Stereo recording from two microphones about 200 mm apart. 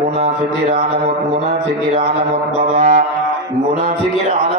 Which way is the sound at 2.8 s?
40° right (ahead or behind).